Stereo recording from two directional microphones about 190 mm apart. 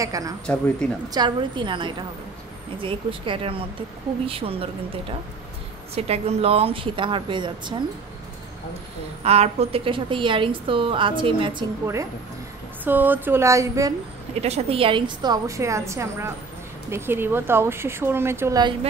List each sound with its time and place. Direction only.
0.0 s a woman's voice: 20° right (ahead or behind)
5.9 s a woman's voice: 35° right (ahead or behind)
9.2 s a woman's voice: 35° right (ahead or behind)
11.8 s a woman's voice: 15° right (ahead or behind)
14.4 s a woman's voice: 30° right (ahead or behind)